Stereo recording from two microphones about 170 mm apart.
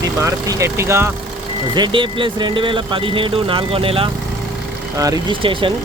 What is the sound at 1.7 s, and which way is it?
Speech, 25° right (ahead or behind).